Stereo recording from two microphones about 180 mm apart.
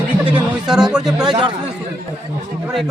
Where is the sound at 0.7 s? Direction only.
5° right (ahead or behind).